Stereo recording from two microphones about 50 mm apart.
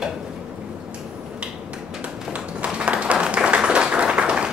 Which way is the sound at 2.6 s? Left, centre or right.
Right.